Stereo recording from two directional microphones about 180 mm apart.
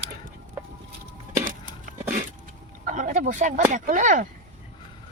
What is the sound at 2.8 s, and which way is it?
Speech, 45° right (ahead or behind).